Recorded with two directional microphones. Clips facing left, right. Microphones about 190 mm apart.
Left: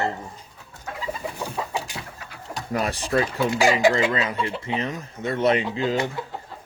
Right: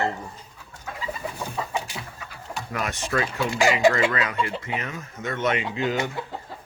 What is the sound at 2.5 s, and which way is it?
Speech, 35° left (ahead or behind).